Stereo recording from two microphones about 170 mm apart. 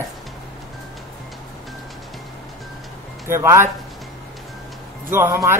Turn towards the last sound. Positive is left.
turn(degrees=-15)  # may be behind; listen again after turning